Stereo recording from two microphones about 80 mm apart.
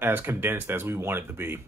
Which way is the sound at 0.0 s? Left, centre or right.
Right.